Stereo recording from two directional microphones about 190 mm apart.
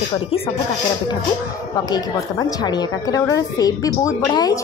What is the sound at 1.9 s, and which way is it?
A woman's voice, 20° left (ahead or behind).